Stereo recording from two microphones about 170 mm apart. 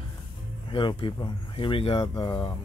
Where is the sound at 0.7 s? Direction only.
30° left (ahead or behind).